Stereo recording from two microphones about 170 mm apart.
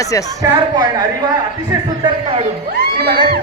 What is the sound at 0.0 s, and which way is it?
Speech, 20° left (ahead or behind).